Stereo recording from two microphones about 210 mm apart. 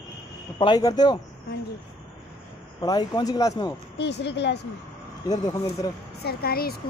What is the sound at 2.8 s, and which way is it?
Speech, 20° left (ahead or behind).